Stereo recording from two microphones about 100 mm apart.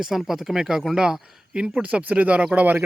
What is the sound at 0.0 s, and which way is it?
Speech, 5° right (ahead or behind).